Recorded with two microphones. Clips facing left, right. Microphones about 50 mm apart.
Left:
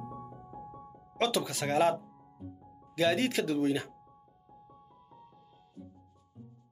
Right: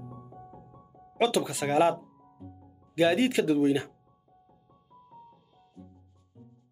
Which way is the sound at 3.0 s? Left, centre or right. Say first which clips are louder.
Right 4 dB; centre.